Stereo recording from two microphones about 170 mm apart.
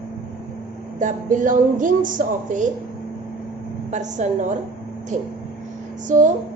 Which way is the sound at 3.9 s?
45° right (ahead or behind).